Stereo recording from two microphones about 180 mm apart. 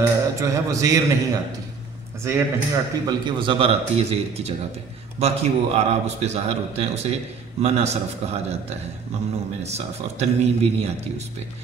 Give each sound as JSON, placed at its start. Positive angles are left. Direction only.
{"t": 0.0, "sound": "a man's voice", "side_deg": -15}